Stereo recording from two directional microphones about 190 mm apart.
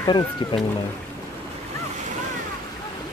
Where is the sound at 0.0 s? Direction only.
25° left (ahead or behind).